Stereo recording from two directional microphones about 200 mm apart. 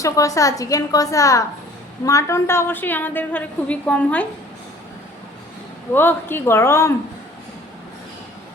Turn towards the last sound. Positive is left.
turn(degrees=15)  # may be behind; listen again after turning